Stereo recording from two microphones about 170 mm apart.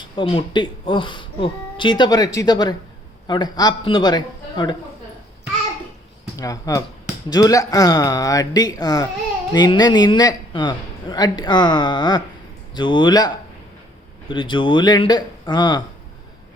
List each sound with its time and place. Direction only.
0.2 s a man's voice: 30° left (ahead or behind)
6.3 s a man's voice: 20° left (ahead or behind)